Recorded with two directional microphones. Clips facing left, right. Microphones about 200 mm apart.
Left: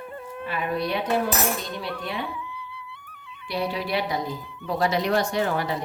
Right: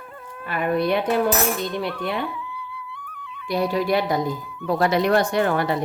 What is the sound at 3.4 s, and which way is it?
Speech, 45° right (ahead or behind).